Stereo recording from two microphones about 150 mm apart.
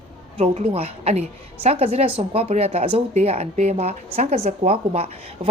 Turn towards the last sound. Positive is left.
turn(degrees=-40)  # may be behind; listen again after turning